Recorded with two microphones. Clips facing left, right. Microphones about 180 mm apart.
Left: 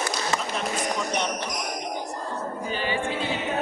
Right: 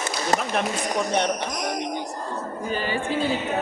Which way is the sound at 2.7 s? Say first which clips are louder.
Right 2 dB; 45° right (ahead or behind).